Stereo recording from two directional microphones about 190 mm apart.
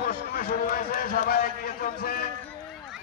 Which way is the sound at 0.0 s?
50° left (ahead or behind).